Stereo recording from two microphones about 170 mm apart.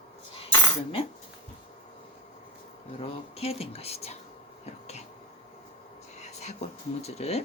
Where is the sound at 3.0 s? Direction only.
35° left (ahead or behind).